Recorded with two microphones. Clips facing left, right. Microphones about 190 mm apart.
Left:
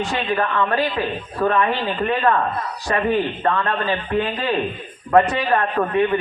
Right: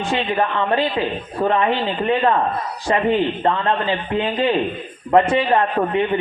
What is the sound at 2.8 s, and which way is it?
A man's voice, 25° right (ahead or behind).